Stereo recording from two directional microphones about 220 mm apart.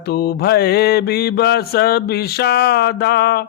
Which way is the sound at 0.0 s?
45° left (ahead or behind).